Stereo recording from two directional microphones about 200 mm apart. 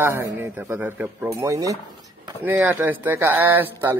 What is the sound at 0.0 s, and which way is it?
A man's voice, 10° right (ahead or behind).